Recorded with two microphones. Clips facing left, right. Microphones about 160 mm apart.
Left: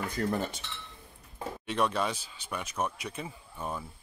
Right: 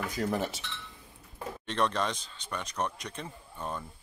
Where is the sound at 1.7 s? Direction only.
10° left (ahead or behind).